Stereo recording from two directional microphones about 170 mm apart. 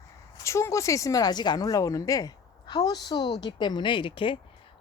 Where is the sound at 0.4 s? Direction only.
15° left (ahead or behind).